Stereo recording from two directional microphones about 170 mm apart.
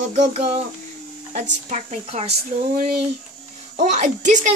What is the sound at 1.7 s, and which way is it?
Speech, 40° right (ahead or behind).